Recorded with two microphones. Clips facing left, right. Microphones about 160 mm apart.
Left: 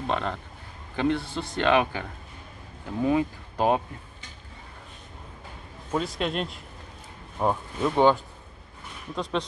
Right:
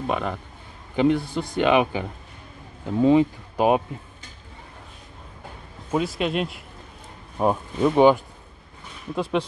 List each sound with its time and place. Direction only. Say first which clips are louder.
0.0 s speech: right 2 dB; 10° right (ahead or behind); by 3.3 s 25° right (ahead or behind)
3.5 s speech: right 4 dB; 15° right (ahead or behind)
5.9 s speech: right 4 dB; 5° right (ahead or behind)